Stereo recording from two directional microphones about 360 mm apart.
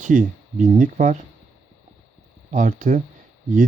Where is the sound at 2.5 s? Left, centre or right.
Right.